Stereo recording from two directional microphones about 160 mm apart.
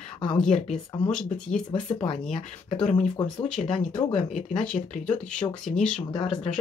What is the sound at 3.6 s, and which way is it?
Speech, 45° left (ahead or behind).